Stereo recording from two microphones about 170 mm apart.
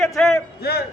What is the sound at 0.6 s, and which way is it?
Speech, 70° left (ahead or behind).